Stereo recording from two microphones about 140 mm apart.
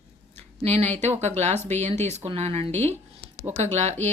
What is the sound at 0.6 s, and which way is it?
Speech, 50° right (ahead or behind).